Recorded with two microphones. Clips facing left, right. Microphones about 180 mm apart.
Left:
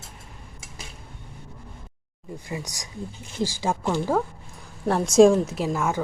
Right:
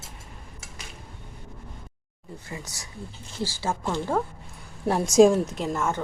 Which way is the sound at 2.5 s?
15° left (ahead or behind).